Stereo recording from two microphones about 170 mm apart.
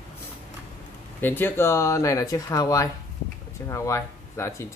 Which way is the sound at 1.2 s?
10° left (ahead or behind).